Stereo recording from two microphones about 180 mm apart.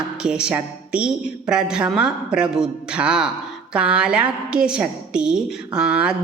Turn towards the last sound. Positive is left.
turn(degrees=-5)  # may be behind; listen again after turning